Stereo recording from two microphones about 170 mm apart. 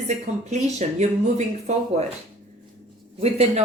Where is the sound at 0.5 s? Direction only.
40° right (ahead or behind).